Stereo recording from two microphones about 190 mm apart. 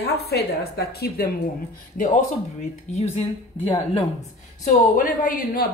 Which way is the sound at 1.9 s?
45° left (ahead or behind).